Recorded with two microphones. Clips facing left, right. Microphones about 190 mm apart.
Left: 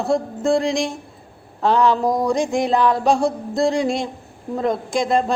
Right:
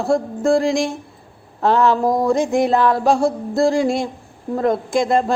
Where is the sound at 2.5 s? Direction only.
20° left (ahead or behind).